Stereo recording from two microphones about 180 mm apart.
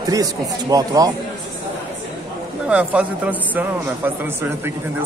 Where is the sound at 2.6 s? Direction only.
5° right (ahead or behind).